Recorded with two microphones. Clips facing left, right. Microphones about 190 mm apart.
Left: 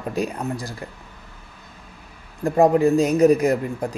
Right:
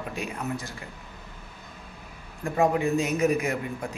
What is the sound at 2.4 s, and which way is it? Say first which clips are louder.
Speech: left 8 dB; 40° left (ahead or behind).